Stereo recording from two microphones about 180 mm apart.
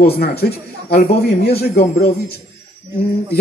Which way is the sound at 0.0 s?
60° left (ahead or behind).